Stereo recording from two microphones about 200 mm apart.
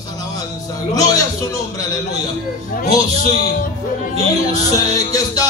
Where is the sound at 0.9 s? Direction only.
20° left (ahead or behind).